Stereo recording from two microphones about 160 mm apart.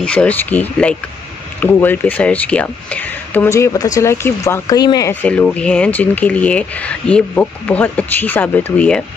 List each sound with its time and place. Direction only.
0.0 s speech: 10° left (ahead or behind); by 5.1 s 25° left (ahead or behind)
5.2 s speech: 10° left (ahead or behind)